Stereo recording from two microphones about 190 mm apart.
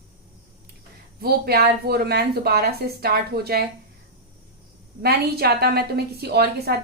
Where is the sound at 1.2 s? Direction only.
55° right (ahead or behind).